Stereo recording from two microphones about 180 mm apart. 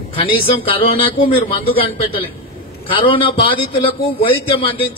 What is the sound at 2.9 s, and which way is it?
A man's voice, 30° left (ahead or behind).